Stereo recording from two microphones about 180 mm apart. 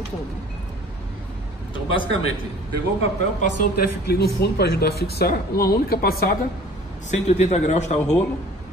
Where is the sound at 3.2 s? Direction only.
45° left (ahead or behind).